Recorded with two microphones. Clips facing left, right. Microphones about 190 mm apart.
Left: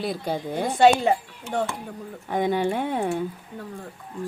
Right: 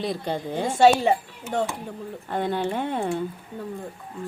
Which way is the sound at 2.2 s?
15° left (ahead or behind).